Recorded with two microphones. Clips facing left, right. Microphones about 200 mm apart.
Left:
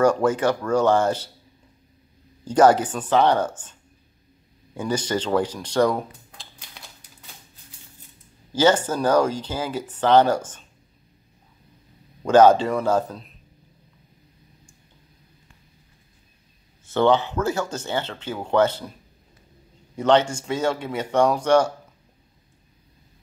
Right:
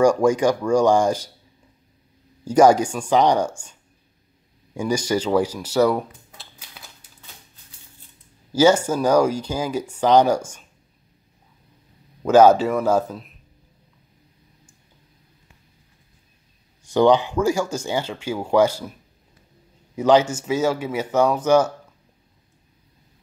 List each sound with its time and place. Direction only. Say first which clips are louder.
0.0 s speech: right 3 dB; 10° right (ahead or behind)
2.4 s speech: right 2 dB; 10° right (ahead or behind)
4.7 s speech: right 3 dB; 10° right (ahead or behind)
8.5 s speech: right 3 dB; 10° right (ahead or behind)
12.2 s speech: right 1 dB; 10° right (ahead or behind)
16.8 s speech: right 3 dB; 15° right (ahead or behind)
20.0 s speech: right 2 dB; 10° right (ahead or behind)